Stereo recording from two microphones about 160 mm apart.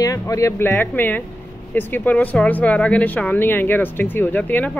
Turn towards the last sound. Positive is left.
turn(degrees=10)  # may be behind; listen again after turning